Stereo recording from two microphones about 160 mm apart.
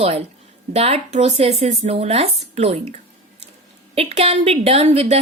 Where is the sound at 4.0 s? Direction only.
40° right (ahead or behind).